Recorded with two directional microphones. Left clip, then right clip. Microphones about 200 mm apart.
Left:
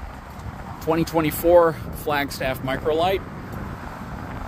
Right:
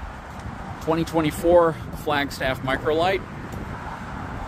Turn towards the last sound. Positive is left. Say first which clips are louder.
# even
turn(degrees=10)  # may be behind; listen again after turning